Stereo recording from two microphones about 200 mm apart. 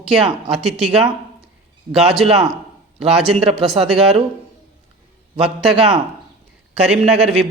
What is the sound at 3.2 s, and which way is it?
Speech, 30° right (ahead or behind).